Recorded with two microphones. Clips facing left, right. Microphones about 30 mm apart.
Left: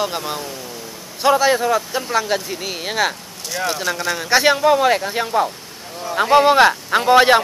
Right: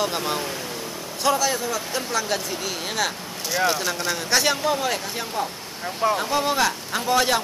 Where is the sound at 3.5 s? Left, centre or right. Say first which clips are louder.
Left 1 dB; centre.